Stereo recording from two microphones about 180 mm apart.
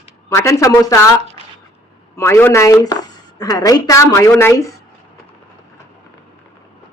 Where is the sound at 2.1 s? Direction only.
15° left (ahead or behind).